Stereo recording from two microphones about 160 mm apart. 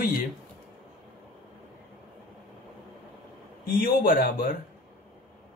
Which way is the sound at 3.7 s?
60° left (ahead or behind).